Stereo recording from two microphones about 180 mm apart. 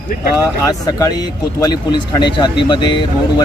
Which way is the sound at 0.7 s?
20° left (ahead or behind).